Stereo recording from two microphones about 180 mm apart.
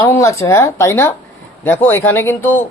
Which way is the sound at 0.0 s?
15° left (ahead or behind).